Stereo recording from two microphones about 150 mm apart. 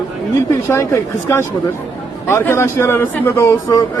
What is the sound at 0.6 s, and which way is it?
A man's voice, 15° left (ahead or behind).